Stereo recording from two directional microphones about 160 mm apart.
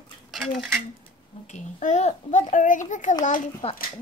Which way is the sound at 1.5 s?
50° left (ahead or behind).